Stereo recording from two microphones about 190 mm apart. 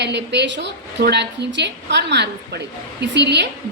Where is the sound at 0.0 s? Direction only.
65° right (ahead or behind).